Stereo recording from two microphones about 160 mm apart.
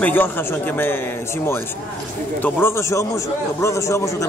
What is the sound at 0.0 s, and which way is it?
Speech, 10° left (ahead or behind).